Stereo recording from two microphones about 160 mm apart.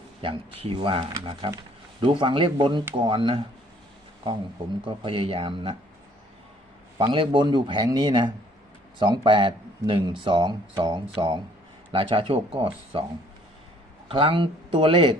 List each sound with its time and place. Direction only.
0.2 s speech: 35° right (ahead or behind)
4.9 s speech: 30° right (ahead or behind)
7.0 s speech: 30° right (ahead or behind)
14.1 s speech: 35° right (ahead or behind)